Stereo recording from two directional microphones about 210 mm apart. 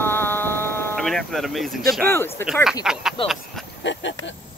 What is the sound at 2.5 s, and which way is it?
Speech, centre (ahead or behind).